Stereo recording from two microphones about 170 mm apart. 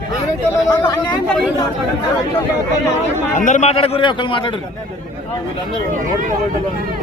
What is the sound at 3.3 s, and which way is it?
Speech, 45° left (ahead or behind).